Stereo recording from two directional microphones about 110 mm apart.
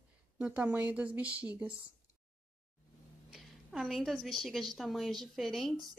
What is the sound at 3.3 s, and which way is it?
A woman's voice, 5° right (ahead or behind).